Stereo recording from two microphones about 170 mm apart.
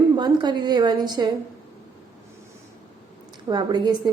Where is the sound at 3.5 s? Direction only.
25° right (ahead or behind).